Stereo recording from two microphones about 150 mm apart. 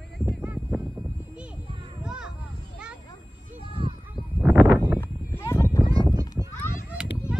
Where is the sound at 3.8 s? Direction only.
35° right (ahead or behind).